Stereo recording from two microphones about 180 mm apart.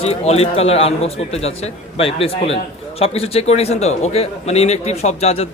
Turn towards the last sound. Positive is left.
turn(degrees=35)  # may be behind; listen again after turning